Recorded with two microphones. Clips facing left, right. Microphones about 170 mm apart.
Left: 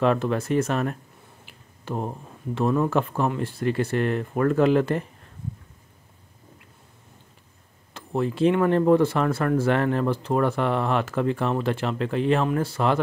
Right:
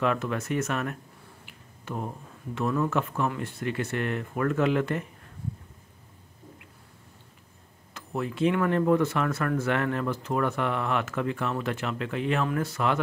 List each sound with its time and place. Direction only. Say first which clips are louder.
0.0 s speech: left 5 dB; 35° left (ahead or behind)
7.9 s speech: left 6 dB; 30° left (ahead or behind)